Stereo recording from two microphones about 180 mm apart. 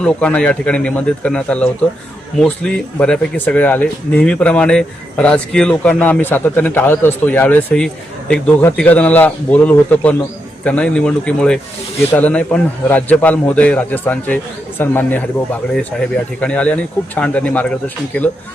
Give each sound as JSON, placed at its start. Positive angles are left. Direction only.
{"t": 0.0, "sound": "a man's voice", "side_deg": 5}